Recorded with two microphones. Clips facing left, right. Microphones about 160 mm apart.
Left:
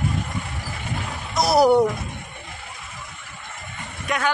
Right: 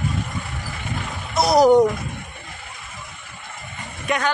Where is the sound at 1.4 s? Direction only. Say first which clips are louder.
Right 2 dB; 5° left (ahead or behind).